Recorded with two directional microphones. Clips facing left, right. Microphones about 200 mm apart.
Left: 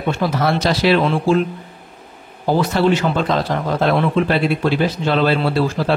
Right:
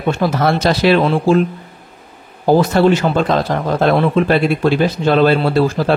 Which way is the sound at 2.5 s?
45° right (ahead or behind).